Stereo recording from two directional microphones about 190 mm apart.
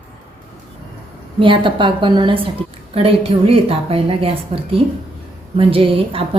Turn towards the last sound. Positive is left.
turn(degrees=-30)  # may be behind; listen again after turning